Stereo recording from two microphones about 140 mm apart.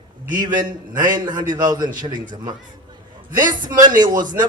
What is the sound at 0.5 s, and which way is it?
Speech, 70° right (ahead or behind).